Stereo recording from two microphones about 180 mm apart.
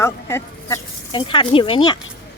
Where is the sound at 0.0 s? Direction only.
15° left (ahead or behind).